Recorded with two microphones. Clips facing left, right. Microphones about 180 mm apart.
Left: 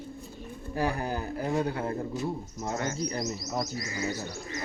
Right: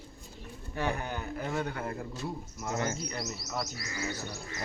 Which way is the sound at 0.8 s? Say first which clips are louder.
Left 4 dB; 35° left (ahead or behind).